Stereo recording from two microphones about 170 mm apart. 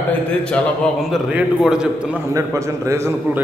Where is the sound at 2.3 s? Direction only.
15° right (ahead or behind).